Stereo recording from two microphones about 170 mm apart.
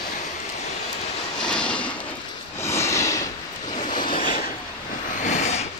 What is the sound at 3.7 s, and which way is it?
Vehicle, 45° left (ahead or behind).